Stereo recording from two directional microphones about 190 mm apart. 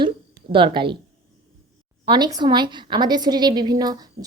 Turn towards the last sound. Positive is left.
turn(degrees=-20)  # may be behind; listen again after turning